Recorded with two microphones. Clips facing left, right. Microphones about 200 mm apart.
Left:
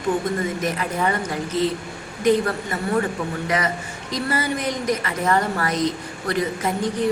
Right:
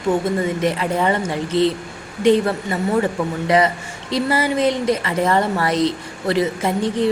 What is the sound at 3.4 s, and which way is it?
A woman's voice, 30° right (ahead or behind).